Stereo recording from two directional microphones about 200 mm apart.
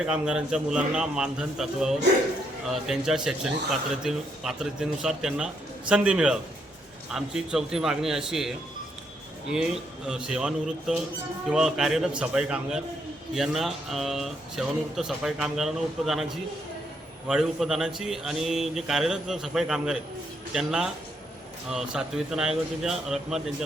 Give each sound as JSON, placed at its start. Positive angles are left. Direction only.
{"t": 0.0, "sound": "speech", "side_deg": -5}
{"t": 17.2, "sound": "speech", "side_deg": 0}